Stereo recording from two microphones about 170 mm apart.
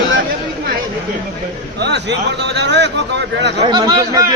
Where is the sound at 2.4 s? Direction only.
90° right.